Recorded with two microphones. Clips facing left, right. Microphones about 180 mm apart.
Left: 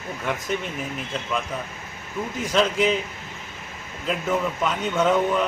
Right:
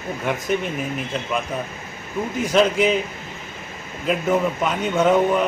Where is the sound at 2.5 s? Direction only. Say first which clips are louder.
Right 3 dB; 10° right (ahead or behind).